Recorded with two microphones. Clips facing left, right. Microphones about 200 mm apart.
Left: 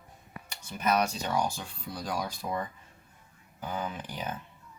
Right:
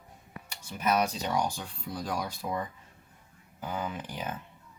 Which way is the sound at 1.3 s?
15° right (ahead or behind).